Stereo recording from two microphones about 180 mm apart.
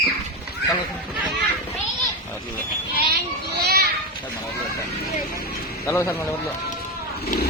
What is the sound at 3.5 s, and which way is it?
Children playing, 60° right (ahead or behind).